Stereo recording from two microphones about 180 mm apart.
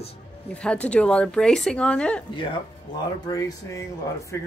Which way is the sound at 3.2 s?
20° left (ahead or behind).